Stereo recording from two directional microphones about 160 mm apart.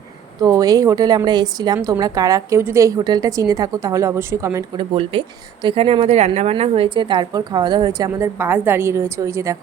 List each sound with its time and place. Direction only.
0.3 s a woman's voice: 25° right (ahead or behind)
4.8 s a woman's voice: 35° right (ahead or behind); by 9.6 s 20° right (ahead or behind)